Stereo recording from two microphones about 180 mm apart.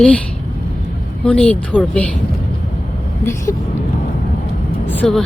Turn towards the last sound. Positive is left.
turn(degrees=5)  # may be behind; listen again after turning